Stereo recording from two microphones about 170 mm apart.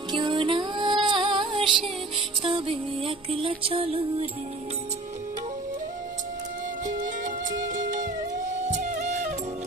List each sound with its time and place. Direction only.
0.1 s music: 25° right (ahead or behind)
8.6 s music: 45° right (ahead or behind)